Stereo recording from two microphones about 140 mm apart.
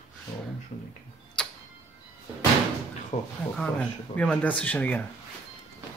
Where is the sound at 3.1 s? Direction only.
45° left (ahead or behind).